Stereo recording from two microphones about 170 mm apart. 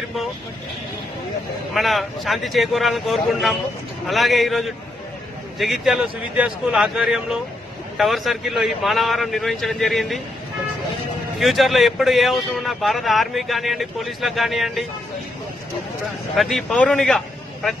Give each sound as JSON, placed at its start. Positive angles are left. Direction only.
{"t": 1.7, "sound": "a man's voice", "side_deg": 0}
{"t": 11.3, "sound": "a man's voice", "side_deg": 0}
{"t": 16.3, "sound": "a man's voice", "side_deg": 0}